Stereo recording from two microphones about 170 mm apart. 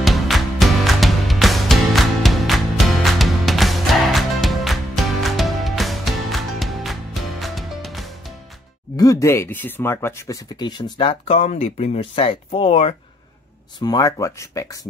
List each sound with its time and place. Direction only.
0.0 s music: centre (ahead or behind)
8.9 s speech: 20° left (ahead or behind); by 12.9 s 35° left (ahead or behind)
13.7 s speech: 25° left (ahead or behind)